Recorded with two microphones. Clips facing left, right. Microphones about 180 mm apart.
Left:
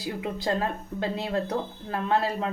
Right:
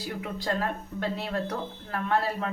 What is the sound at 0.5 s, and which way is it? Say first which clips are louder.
Speech: even; 20° left (ahead or behind).